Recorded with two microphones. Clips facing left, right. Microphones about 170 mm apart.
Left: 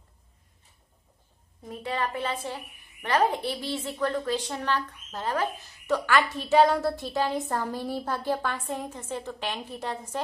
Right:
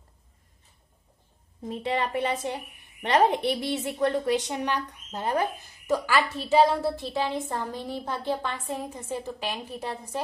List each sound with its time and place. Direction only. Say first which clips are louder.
1.6 s a woman's voice: right 3 dB; 25° right (ahead or behind)
6.0 s a woman's voice: left 1 dB; 5° right (ahead or behind)